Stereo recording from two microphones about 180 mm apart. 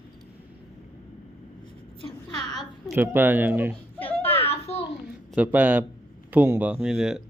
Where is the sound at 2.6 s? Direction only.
10° right (ahead or behind).